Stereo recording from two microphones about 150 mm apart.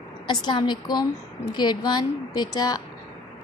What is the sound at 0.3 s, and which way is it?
A woman's voice, 30° left (ahead or behind).